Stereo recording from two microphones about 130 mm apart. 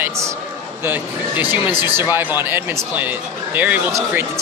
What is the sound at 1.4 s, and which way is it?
Speech, 15° right (ahead or behind).